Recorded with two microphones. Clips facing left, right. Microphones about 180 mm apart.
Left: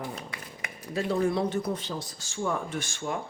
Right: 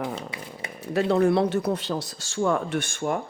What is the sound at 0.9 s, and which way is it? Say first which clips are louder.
Speech: right 6 dB; 70° right (ahead or behind).